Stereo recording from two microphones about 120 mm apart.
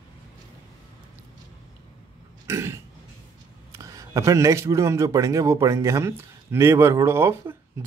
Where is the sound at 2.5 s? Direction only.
25° right (ahead or behind).